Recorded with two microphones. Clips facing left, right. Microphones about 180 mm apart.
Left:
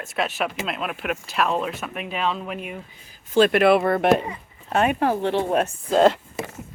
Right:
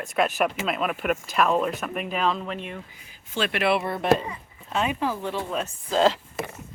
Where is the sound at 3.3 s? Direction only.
45° left (ahead or behind).